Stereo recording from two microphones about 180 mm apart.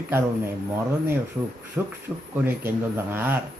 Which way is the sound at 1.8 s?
10° right (ahead or behind).